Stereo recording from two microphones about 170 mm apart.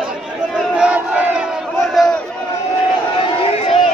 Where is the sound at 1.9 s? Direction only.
Centre (ahead or behind).